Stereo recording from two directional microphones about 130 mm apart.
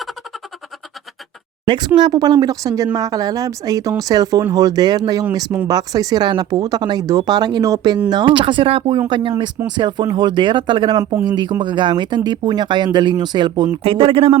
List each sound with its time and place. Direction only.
1.6 s a woman's voice: 40° right (ahead or behind)
11.0 s speech: 15° right (ahead or behind)
11.6 s speech: 35° right (ahead or behind)